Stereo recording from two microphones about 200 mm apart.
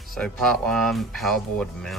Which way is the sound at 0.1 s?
5° left (ahead or behind).